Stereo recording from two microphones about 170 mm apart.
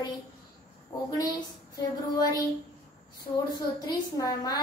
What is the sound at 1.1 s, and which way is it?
Speech, 20° left (ahead or behind).